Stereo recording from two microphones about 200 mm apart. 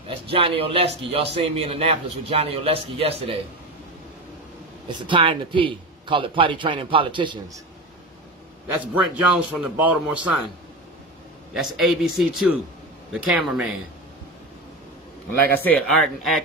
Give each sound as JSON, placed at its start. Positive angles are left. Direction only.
{"t": 0.1, "sound": "a man's voice", "side_deg": -25}
{"t": 4.8, "sound": "a man's voice", "side_deg": -25}
{"t": 8.9, "sound": "a man's voice", "side_deg": -5}
{"t": 11.5, "sound": "a man's voice", "side_deg": 0}
{"t": 15.6, "sound": "a man's voice", "side_deg": 5}